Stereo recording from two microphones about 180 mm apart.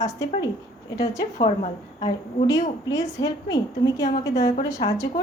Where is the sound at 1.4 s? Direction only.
35° left (ahead or behind).